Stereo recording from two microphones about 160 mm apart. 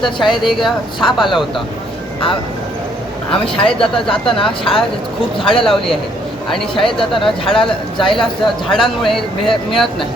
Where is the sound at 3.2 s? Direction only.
5° left (ahead or behind).